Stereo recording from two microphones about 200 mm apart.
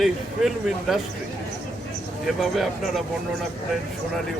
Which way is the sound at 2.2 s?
Centre (ahead or behind).